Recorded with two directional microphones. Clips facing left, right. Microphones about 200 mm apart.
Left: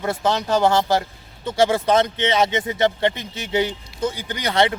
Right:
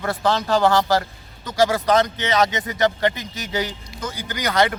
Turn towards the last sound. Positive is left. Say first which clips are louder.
# even
turn(degrees=30)  # may be behind; listen again after turning